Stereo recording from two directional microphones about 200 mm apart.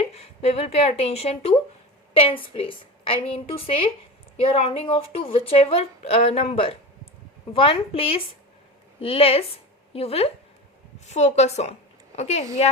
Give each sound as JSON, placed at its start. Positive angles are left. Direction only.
{"t": 0.0, "sound": "a woman's voice", "side_deg": 30}